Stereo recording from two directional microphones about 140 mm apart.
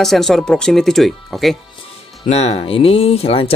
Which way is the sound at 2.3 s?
50° left (ahead or behind).